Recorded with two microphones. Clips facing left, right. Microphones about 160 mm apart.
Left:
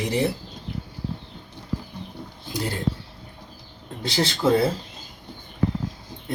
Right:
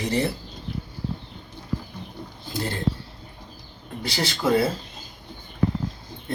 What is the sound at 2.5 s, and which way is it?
Speech, 15° left (ahead or behind).